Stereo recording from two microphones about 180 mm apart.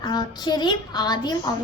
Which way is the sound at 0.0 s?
25° left (ahead or behind).